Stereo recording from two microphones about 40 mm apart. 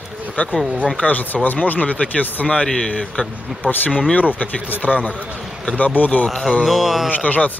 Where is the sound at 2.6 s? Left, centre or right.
Centre.